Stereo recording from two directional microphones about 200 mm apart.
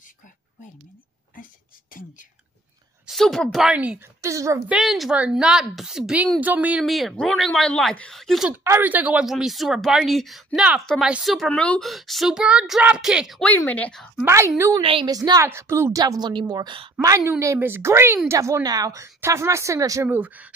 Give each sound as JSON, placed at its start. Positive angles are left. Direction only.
{"t": 1.3, "sound": "whispering", "side_deg": 40}
{"t": 3.1, "sound": "a woman's voice", "side_deg": 0}
{"t": 4.7, "sound": "a woman's voice", "side_deg": 0}
{"t": 14.2, "sound": "a woman's voice", "side_deg": -15}
{"t": 14.8, "sound": "a woman's voice", "side_deg": -25}